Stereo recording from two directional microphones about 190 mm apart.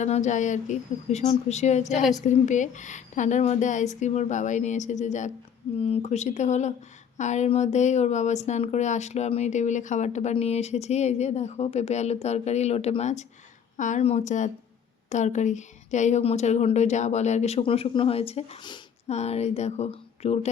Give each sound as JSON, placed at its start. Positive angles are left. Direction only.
{"t": 0.0, "sound": "speech", "side_deg": 40}